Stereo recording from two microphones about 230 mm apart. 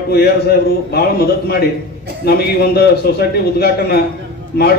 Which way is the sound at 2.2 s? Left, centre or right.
Left.